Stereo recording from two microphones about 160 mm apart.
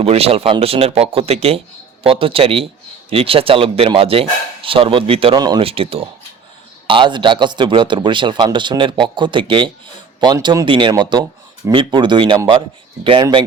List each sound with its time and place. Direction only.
0.0 s a man's voice: 40° right (ahead or behind)